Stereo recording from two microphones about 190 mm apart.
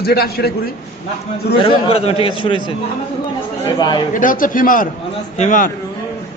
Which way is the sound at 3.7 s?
25° left (ahead or behind).